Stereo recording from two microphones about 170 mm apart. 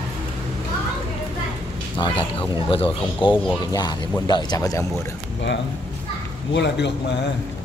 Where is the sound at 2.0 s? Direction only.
25° left (ahead or behind).